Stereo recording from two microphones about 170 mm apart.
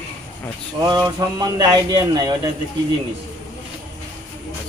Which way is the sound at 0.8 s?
20° right (ahead or behind).